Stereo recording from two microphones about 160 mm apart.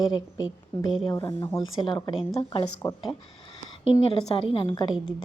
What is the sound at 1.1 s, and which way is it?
A woman's voice, 25° left (ahead or behind).